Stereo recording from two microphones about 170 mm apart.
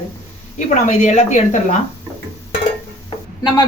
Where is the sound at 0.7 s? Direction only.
45° left (ahead or behind).